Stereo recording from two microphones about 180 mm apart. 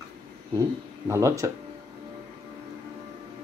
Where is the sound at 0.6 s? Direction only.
15° right (ahead or behind).